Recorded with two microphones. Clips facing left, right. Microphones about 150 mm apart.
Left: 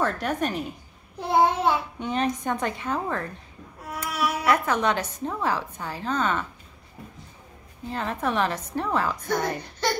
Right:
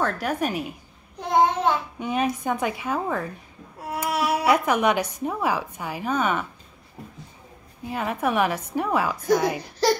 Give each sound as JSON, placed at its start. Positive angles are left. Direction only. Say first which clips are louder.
{"t": 0.0, "sound": "a woman's voice", "louder": "right 1 dB", "side_deg": -5}
{"t": 1.2, "sound": "a sound", "louder": "right 1 dB", "side_deg": 10}
{"t": 2.0, "sound": "a woman's voice", "louder": "right 1 dB", "side_deg": -10}
{"t": 4.1, "sound": "a sound", "louder": "right 3 dB", "side_deg": -30}
{"t": 4.5, "sound": "a woman's voice", "louder": "right 2 dB", "side_deg": -15}
{"t": 7.8, "sound": "a woman's voice", "louder": "right 2 dB", "side_deg": -10}